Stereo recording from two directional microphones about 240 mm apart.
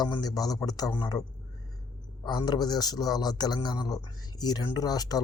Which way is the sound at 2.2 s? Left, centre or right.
Centre.